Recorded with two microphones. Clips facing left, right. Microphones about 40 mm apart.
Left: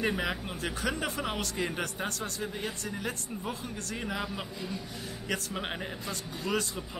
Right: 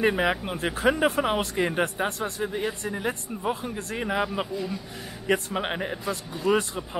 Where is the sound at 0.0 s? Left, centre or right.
Right.